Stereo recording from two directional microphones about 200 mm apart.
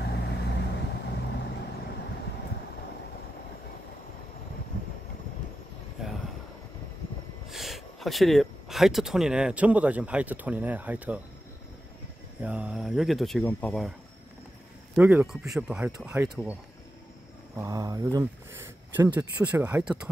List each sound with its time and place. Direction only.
0.0 s vehicle: 55° left (ahead or behind)
7.4 s speech: centre (ahead or behind)
12.4 s speech: 5° right (ahead or behind)
15.0 s speech: 10° right (ahead or behind)
17.6 s speech: 20° right (ahead or behind)